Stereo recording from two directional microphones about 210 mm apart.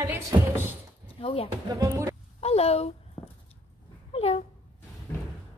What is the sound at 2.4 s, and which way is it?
Speech, 30° left (ahead or behind).